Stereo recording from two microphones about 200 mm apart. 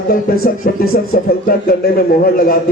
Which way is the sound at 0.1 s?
45° left (ahead or behind).